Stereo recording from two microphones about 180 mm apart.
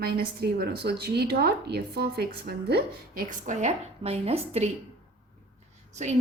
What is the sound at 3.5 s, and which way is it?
A woman's voice, 40° right (ahead or behind).